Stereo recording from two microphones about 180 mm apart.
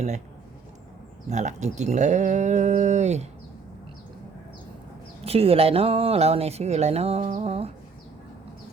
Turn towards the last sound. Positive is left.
turn(degrees=-35)  # may be behind; listen again after turning